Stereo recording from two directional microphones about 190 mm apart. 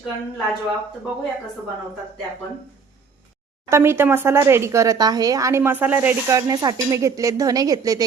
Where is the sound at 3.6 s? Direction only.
15° right (ahead or behind).